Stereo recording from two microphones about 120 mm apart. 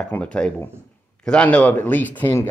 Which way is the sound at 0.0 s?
10° left (ahead or behind).